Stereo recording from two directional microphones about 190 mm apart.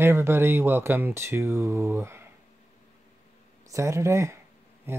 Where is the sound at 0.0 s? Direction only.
15° right (ahead or behind).